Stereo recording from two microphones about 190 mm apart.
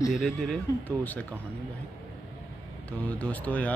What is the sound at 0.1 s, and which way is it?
Speech, centre (ahead or behind).